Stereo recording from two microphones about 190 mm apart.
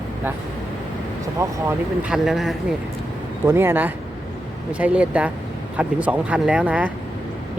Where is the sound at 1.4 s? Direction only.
15° right (ahead or behind).